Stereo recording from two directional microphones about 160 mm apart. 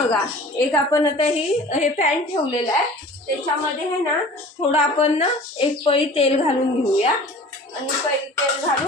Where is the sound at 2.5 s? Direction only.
30° left (ahead or behind).